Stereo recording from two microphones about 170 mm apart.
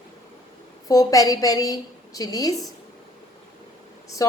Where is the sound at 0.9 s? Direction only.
20° left (ahead or behind).